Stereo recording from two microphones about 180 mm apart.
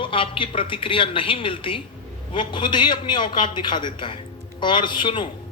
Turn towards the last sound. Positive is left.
turn(degrees=25)  # may be behind; listen again after turning